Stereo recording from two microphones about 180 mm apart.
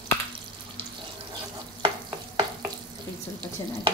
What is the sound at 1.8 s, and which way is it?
Stir, 25° right (ahead or behind).